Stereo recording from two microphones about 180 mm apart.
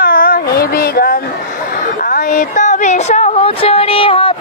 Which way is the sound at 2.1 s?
45° left (ahead or behind).